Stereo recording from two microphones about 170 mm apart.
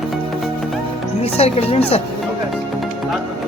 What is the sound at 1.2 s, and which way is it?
Speech, 35° left (ahead or behind).